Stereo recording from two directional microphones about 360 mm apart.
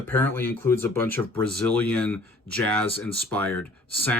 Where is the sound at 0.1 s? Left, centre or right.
Centre.